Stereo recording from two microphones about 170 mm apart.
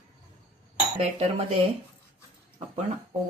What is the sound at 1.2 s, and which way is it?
Speech, 35° right (ahead or behind).